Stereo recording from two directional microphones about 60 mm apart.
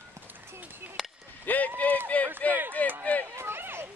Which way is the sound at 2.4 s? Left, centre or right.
Left.